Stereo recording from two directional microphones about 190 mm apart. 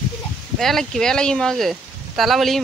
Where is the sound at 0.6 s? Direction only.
Centre (ahead or behind).